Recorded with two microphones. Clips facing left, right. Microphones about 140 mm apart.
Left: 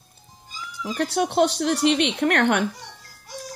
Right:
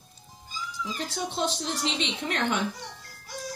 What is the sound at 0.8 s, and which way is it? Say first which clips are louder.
Speech: left 11 dB; 65° left (ahead or behind).